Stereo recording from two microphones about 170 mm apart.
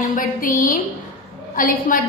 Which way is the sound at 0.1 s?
55° left (ahead or behind).